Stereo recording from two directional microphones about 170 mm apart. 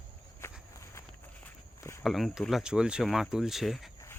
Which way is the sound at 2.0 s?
Centre (ahead or behind).